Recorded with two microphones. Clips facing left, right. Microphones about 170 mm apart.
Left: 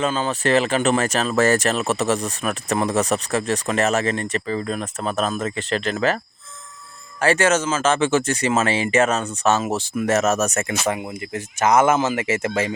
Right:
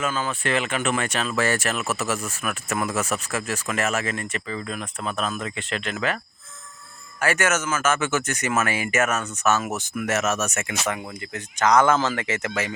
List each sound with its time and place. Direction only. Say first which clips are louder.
0.0 s speech: left 5 dB; 30° left (ahead or behind)
7.2 s speech: left 5 dB; 30° left (ahead or behind)